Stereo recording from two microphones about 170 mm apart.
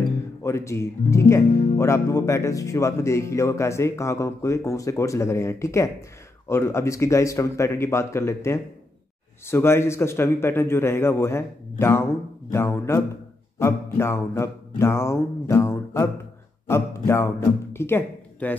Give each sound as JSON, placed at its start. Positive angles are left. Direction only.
{"t": 0.4, "sound": "speech", "side_deg": 15}
{"t": 13.6, "sound": "music", "side_deg": 15}
{"t": 16.6, "sound": "speech", "side_deg": 15}